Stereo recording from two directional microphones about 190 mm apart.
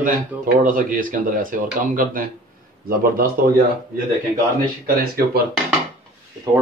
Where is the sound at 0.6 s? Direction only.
45° right (ahead or behind).